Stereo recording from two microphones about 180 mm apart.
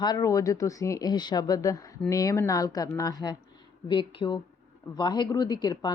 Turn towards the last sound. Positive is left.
turn(degrees=25)  # may be behind; listen again after turning